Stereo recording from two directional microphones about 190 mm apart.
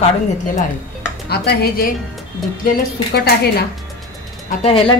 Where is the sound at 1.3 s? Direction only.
60° left (ahead or behind).